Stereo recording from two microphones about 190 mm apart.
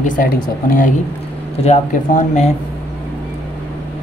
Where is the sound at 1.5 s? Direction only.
35° left (ahead or behind).